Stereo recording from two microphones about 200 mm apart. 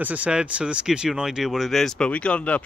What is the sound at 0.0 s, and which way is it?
Speech, 5° right (ahead or behind).